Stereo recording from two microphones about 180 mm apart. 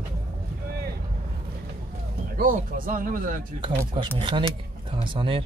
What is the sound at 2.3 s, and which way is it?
Speech, 50° right (ahead or behind).